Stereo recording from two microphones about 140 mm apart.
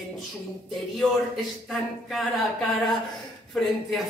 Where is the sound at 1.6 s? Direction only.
Centre (ahead or behind).